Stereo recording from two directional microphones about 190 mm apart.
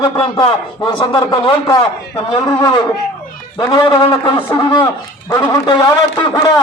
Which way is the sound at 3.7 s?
25° left (ahead or behind).